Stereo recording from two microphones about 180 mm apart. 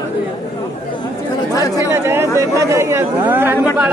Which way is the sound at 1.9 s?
15° right (ahead or behind).